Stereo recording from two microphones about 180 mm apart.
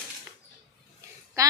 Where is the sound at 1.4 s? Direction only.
15° right (ahead or behind).